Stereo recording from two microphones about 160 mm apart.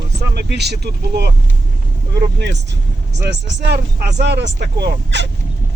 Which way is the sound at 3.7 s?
90° right.